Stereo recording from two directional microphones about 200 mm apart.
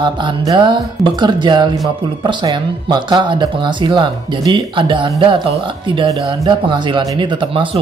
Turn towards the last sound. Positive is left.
turn(degrees=-25)  # may be behind; listen again after turning